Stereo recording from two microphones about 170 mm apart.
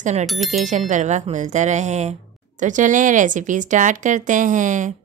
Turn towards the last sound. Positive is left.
turn(degrees=-50)  # may be behind; listen again after turning